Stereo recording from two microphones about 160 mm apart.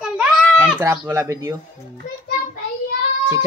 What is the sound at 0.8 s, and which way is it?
Speech, 15° right (ahead or behind).